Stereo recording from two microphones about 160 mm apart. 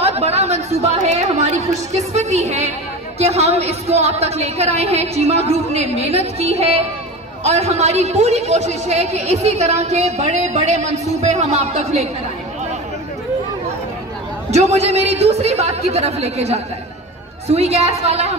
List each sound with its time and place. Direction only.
0.0 s a woman's voice: 40° right (ahead or behind)
14.5 s a woman's voice: 45° right (ahead or behind)